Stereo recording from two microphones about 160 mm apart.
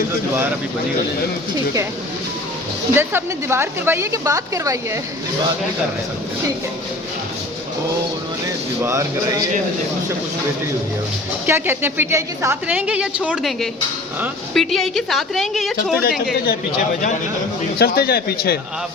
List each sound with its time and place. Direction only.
2.9 s a woman's voice: 15° right (ahead or behind)
8.8 s speech: 20° right (ahead or behind)
11.4 s a woman's voice: 15° right (ahead or behind)
16.3 s speech: 75° left (ahead or behind)
17.7 s speech: 75° left (ahead or behind)